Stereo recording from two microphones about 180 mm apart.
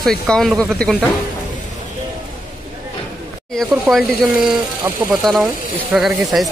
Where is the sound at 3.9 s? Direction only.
Centre (ahead or behind).